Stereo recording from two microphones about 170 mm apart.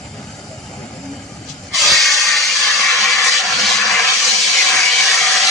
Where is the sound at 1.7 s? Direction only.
Centre (ahead or behind).